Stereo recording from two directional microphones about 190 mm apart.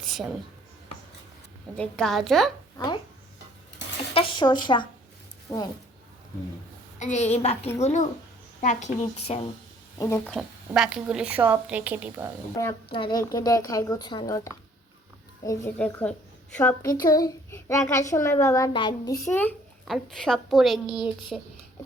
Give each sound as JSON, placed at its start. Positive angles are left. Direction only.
{"t": 0.0, "sound": "a sound", "side_deg": 0}
{"t": 1.7, "sound": "a woman's voice", "side_deg": 5}
{"t": 2.7, "sound": "speech", "side_deg": 20}
{"t": 4.1, "sound": "a woman's voice", "side_deg": 25}
{"t": 7.0, "sound": "a woman's voice", "side_deg": 35}
{"t": 10.0, "sound": "a child's voice", "side_deg": 15}
{"t": 10.3, "sound": "speech", "side_deg": -5}
{"t": 12.5, "sound": "a child's voice", "side_deg": 20}